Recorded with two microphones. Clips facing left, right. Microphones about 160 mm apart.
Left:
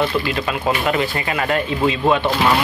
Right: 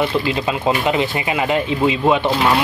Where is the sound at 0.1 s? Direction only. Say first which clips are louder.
Right 2 dB; 20° right (ahead or behind).